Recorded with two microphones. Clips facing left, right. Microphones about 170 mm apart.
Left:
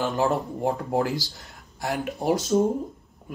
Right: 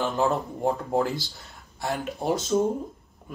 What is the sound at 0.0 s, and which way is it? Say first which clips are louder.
Speech: left 1 dB; 5° left (ahead or behind).